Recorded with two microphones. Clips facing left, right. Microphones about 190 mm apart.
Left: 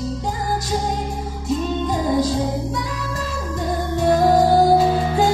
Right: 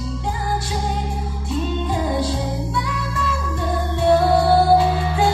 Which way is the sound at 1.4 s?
40° left (ahead or behind).